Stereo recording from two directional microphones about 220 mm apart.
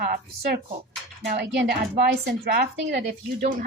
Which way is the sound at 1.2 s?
50° right (ahead or behind).